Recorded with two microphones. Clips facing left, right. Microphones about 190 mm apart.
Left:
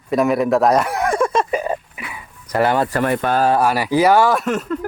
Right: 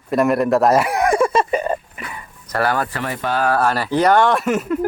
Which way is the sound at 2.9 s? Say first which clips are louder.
Left 5 dB; 50° left (ahead or behind).